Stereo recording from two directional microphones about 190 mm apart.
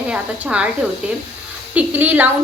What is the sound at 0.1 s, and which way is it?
A woman's voice, 5° right (ahead or behind).